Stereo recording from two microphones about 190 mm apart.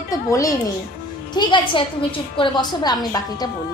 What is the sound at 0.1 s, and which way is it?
A woman's voice, 15° left (ahead or behind).